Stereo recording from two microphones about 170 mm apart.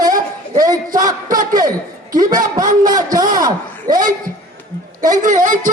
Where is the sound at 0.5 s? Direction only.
20° right (ahead or behind).